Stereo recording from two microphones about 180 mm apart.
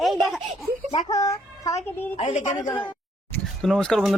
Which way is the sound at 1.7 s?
40° left (ahead or behind).